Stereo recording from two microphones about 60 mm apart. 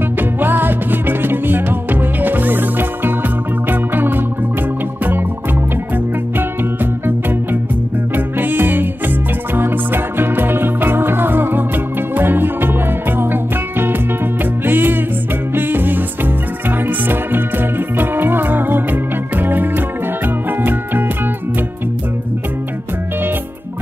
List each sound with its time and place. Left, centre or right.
0.2 s music: right
6.3 s music: right
8.4 s music: right